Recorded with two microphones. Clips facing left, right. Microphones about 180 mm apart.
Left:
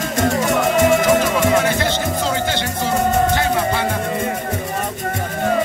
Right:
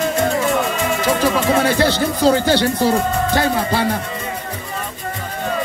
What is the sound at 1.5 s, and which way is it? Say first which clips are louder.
Music: right 2 dB; 35° right (ahead or behind).